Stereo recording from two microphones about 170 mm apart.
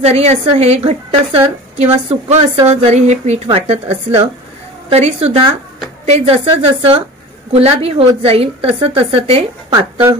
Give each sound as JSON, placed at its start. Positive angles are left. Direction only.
{"t": 0.0, "sound": "a woman's voice", "side_deg": -40}
{"t": 9.7, "sound": "speech", "side_deg": -15}